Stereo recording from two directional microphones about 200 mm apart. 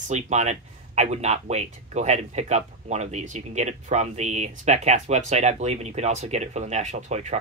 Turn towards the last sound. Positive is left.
turn(degrees=-35)  # may be behind; listen again after turning